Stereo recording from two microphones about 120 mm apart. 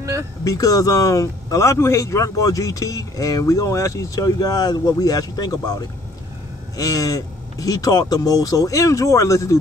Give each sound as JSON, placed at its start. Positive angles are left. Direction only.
{"t": 0.0, "sound": "vehicle", "side_deg": -25}
{"t": 0.4, "sound": "speech", "side_deg": 30}